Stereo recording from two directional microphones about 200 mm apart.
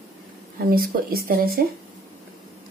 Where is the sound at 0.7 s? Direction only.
45° right (ahead or behind).